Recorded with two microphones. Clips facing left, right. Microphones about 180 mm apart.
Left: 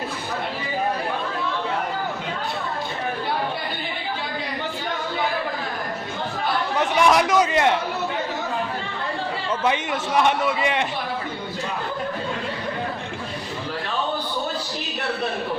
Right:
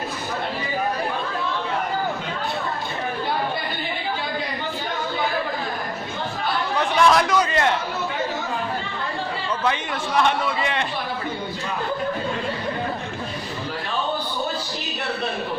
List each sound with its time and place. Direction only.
6.7 s chatter: 15° left (ahead or behind)
9.6 s a man's voice: 15° left (ahead or behind)